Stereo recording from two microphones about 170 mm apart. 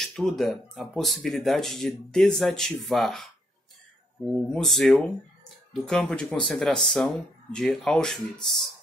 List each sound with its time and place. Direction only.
0.0 s speech: centre (ahead or behind)
4.5 s speech: centre (ahead or behind)